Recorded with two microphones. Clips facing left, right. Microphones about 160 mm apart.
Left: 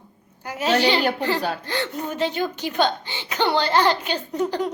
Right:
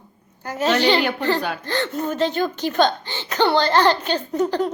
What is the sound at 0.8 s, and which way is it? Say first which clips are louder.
A woman's voice: right 1 dB; 10° left (ahead or behind).